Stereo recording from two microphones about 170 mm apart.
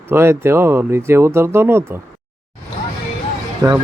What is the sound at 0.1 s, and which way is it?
Speech, 15° right (ahead or behind).